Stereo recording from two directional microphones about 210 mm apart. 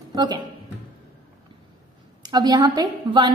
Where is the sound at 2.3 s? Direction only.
20° right (ahead or behind).